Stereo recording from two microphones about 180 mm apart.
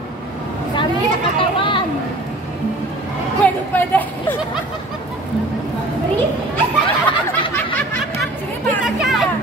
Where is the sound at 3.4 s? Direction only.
10° left (ahead or behind).